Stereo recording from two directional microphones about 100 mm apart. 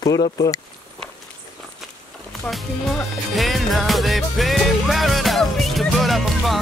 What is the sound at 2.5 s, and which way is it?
Speech, centre (ahead or behind).